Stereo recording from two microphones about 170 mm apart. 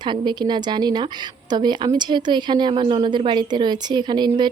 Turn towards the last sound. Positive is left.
turn(degrees=-25)  # may be behind; listen again after turning